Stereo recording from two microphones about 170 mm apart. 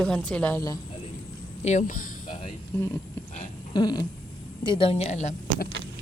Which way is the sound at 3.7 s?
25° left (ahead or behind).